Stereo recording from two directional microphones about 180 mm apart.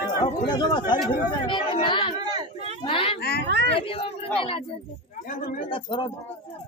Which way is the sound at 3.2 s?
60° left (ahead or behind).